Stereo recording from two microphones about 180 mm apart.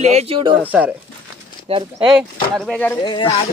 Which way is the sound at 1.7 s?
30° right (ahead or behind).